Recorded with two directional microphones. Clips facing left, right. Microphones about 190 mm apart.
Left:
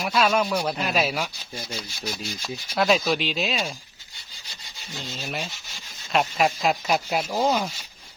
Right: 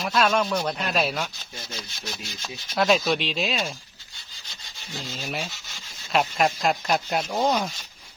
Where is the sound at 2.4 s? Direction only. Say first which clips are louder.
Even; centre (ahead or behind).